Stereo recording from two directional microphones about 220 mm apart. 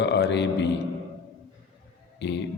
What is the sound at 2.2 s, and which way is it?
Speech, 50° left (ahead or behind).